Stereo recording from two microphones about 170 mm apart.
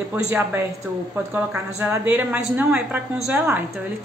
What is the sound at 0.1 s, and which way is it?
A woman's voice, 10° right (ahead or behind).